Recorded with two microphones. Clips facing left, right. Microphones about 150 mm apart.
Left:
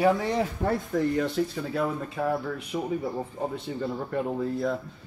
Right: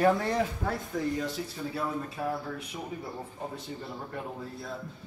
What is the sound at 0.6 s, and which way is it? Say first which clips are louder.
Speech: left 6 dB; 55° left (ahead or behind).